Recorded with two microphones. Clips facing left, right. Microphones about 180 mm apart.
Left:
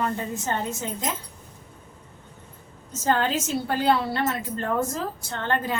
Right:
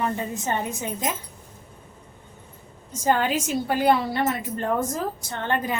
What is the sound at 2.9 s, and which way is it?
A woman's voice, 15° right (ahead or behind).